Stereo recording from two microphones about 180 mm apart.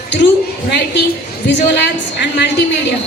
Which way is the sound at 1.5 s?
75° left (ahead or behind).